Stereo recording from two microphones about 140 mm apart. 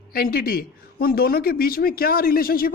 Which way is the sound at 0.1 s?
90° left.